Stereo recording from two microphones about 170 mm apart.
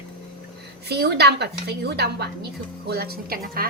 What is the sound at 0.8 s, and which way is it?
A woman's voice, 75° right (ahead or behind).